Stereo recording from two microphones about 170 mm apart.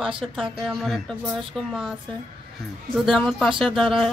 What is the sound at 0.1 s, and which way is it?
Speech, 30° right (ahead or behind).